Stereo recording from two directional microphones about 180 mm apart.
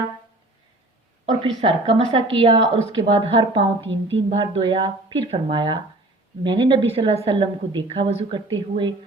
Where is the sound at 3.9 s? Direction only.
90° right.